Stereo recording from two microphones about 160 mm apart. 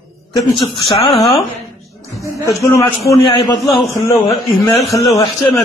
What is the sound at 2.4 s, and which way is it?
Speech, 20° left (ahead or behind).